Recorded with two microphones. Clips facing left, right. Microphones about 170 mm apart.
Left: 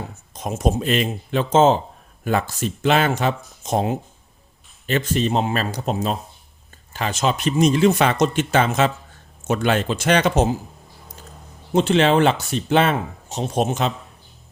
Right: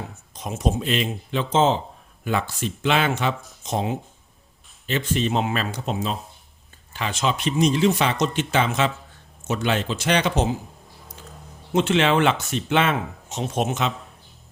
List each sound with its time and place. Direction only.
0.3 s speech: 50° left (ahead or behind)
11.7 s speech: 35° left (ahead or behind)